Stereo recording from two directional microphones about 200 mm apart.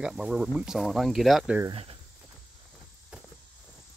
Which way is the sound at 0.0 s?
5° right (ahead or behind).